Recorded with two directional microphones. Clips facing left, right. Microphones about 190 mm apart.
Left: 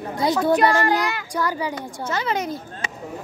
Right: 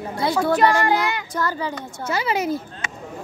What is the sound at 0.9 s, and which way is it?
Speech, 10° left (ahead or behind).